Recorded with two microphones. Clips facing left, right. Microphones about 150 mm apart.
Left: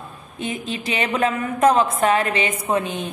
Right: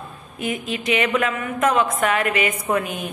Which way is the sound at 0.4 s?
30° left (ahead or behind).